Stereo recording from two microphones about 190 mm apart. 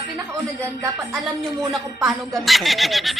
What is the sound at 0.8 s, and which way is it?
Speech, 10° right (ahead or behind).